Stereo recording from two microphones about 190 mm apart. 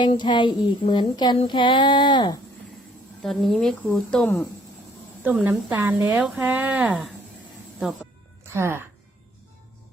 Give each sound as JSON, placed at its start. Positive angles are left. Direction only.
{"t": 0.0, "sound": "child singing", "side_deg": 25}
{"t": 3.2, "sound": "speech", "side_deg": 0}
{"t": 5.2, "sound": "speech", "side_deg": -10}
{"t": 8.5, "sound": "speech", "side_deg": -15}